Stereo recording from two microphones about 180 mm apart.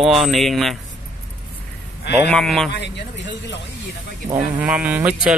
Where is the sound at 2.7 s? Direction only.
75° left (ahead or behind).